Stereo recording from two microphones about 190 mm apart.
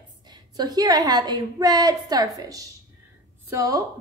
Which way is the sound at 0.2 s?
20° right (ahead or behind).